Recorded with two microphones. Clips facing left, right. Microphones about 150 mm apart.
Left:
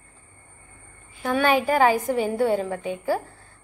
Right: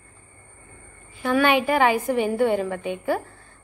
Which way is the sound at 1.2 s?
40° left (ahead or behind).